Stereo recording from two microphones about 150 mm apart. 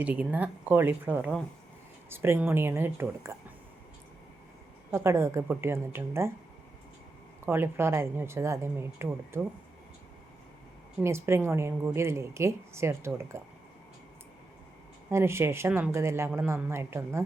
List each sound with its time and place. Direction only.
0.0 s speech: 10° right (ahead or behind)
4.9 s speech: 20° right (ahead or behind)
7.4 s speech: 15° right (ahead or behind)
11.0 s speech: 15° right (ahead or behind)
15.1 s speech: 15° right (ahead or behind)